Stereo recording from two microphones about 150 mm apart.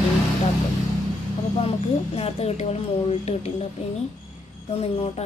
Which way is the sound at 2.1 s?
45° left (ahead or behind).